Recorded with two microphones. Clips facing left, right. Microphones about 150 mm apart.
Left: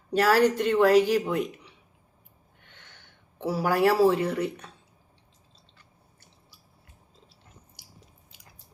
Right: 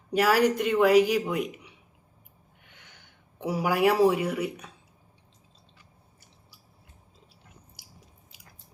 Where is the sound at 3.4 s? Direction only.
15° right (ahead or behind).